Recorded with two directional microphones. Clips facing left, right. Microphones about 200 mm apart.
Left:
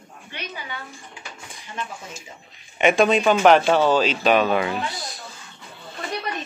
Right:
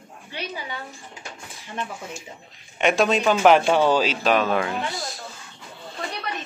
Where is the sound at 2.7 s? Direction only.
Centre (ahead or behind).